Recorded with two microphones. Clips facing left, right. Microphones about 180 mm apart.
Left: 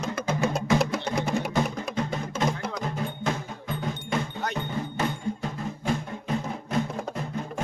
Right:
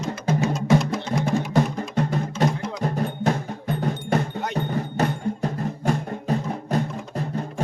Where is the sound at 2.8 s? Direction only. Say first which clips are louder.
Right 8 dB; 40° right (ahead or behind).